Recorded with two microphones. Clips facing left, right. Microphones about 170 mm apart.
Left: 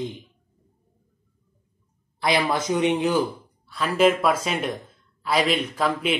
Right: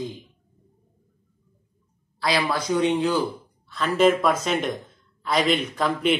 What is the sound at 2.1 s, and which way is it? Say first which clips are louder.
A man's voice: left 2 dB; 20° left (ahead or behind).